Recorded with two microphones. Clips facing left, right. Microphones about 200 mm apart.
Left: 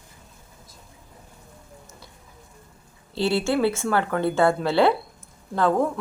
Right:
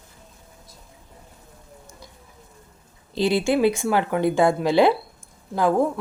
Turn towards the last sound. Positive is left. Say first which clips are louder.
# right 1 dB
turn(degrees=-10)  # may be behind; listen again after turning